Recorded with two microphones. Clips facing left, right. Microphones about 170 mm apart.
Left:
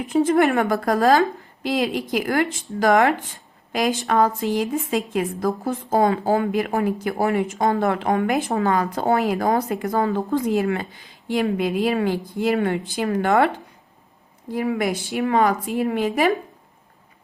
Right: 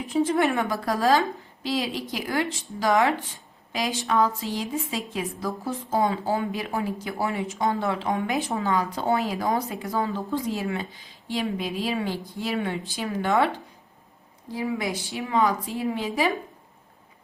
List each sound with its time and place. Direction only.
0.1 s a woman's voice: 55° left (ahead or behind)
14.5 s speech: 60° left (ahead or behind)